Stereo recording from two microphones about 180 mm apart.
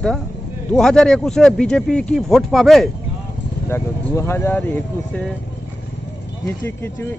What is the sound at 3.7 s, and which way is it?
Speech, 15° left (ahead or behind).